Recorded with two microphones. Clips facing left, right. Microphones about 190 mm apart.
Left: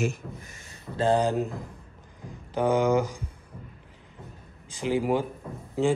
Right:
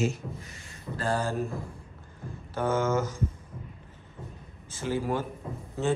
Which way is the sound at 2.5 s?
15° left (ahead or behind).